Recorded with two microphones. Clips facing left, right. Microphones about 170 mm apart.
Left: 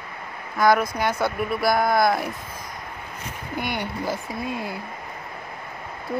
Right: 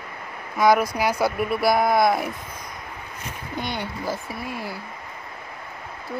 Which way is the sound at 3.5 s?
10° left (ahead or behind).